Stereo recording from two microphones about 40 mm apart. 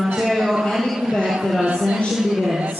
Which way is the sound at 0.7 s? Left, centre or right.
Centre.